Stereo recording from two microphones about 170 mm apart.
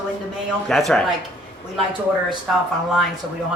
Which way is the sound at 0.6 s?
5° left (ahead or behind).